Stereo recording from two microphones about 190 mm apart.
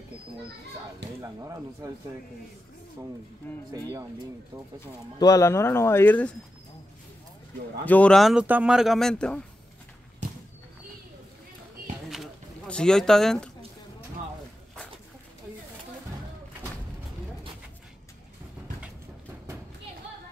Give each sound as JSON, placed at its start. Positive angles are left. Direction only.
{"t": 1.2, "sound": "speech", "side_deg": -20}
{"t": 3.4, "sound": "speech", "side_deg": 10}
{"t": 5.2, "sound": "speech", "side_deg": 15}
{"t": 7.8, "sound": "speech", "side_deg": 5}
{"t": 12.1, "sound": "a sound", "side_deg": 0}